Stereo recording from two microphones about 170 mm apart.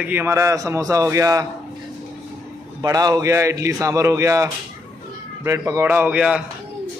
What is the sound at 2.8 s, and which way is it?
A man's voice, 20° right (ahead or behind).